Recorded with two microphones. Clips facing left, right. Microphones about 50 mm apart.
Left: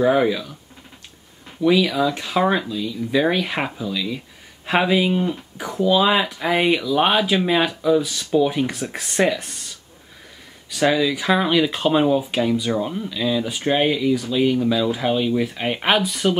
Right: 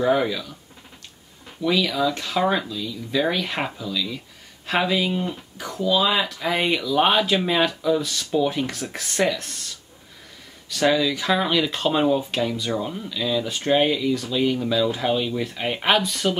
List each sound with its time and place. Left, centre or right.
0.0 s speech: centre
1.6 s speech: centre